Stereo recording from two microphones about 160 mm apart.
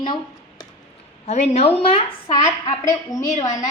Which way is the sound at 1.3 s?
45° left (ahead or behind).